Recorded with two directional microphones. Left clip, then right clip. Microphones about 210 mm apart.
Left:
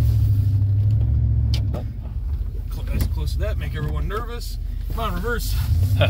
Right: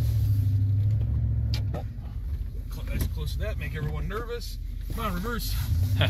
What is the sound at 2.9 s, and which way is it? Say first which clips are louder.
Speech: left 4 dB; 50° left (ahead or behind).